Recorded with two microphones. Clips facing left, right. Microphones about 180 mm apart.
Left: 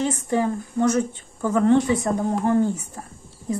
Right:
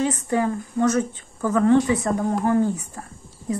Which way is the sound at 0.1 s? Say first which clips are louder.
Even; 15° left (ahead or behind).